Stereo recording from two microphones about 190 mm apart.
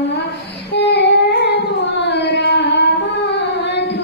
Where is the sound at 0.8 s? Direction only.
65° left (ahead or behind).